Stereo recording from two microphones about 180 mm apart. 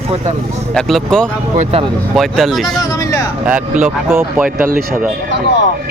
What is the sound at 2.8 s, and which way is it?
Speech, 20° left (ahead or behind).